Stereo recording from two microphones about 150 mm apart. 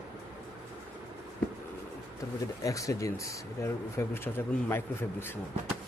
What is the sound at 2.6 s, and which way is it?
Speech, 20° left (ahead or behind).